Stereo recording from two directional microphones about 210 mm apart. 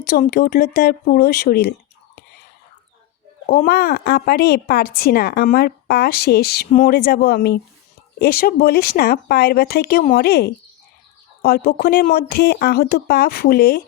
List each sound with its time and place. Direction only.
0.1 s a woman's voice: 45° left (ahead or behind)
3.4 s a woman's voice: 45° left (ahead or behind)